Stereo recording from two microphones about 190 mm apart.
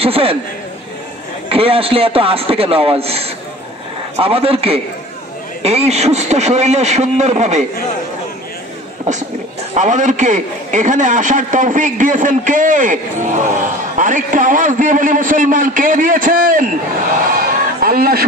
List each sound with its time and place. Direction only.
0.0 s a man's voice: 30° right (ahead or behind)
1.5 s a man's voice: 30° right (ahead or behind)
9.8 s a man's voice: 40° right (ahead or behind)
17.3 s a sound: 50° right (ahead or behind)